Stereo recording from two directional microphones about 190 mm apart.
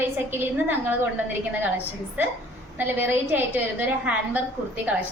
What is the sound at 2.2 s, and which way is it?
A woman's voice, 10° right (ahead or behind).